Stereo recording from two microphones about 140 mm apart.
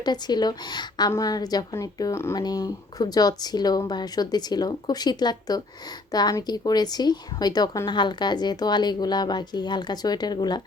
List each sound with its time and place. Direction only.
0.0 s speech: 30° left (ahead or behind)